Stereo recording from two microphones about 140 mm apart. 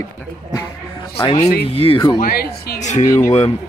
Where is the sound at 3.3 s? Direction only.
45° left (ahead or behind).